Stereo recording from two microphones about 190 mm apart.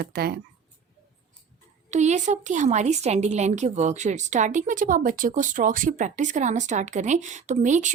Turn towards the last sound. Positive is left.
turn(degrees=-40)  # may be behind; listen again after turning